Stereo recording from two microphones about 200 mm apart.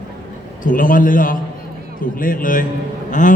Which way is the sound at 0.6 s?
40° left (ahead or behind).